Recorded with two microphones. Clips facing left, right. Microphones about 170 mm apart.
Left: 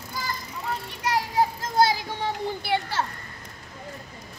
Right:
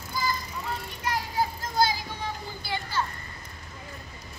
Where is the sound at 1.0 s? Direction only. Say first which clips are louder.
Left 5 dB; 80° left.